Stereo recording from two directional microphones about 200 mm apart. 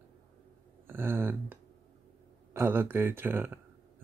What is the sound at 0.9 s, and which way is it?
Speech, 10° right (ahead or behind).